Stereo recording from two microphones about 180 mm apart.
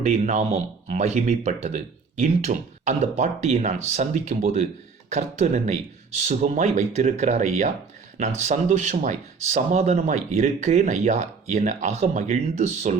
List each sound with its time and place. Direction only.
0.0 s speech: 40° right (ahead or behind)